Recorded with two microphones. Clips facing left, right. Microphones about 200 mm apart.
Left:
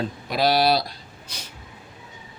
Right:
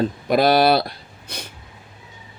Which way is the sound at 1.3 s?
60° right (ahead or behind).